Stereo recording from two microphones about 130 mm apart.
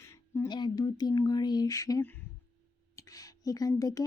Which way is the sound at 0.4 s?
30° left (ahead or behind).